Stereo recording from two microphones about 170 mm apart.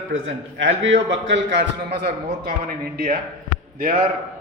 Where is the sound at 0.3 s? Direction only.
90° right.